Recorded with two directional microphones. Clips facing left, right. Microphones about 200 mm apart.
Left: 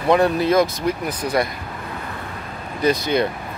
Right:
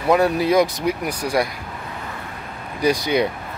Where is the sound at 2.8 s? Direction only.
10° right (ahead or behind).